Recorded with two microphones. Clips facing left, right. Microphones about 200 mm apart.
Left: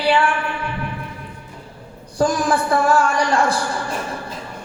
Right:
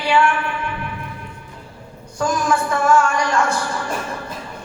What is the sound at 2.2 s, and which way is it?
A woman's voice, 35° left (ahead or behind).